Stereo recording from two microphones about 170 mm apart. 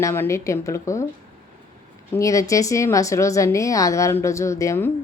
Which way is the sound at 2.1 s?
20° left (ahead or behind).